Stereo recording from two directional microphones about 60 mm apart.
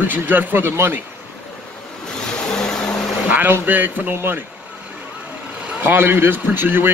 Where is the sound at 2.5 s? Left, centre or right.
Centre.